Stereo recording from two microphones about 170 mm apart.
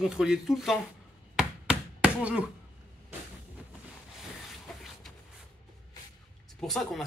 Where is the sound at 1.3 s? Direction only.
5° right (ahead or behind).